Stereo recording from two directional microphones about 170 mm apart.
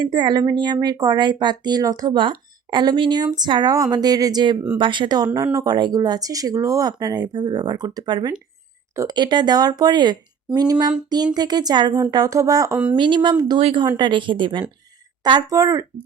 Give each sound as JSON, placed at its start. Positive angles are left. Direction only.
{"t": 0.0, "sound": "speech", "side_deg": -25}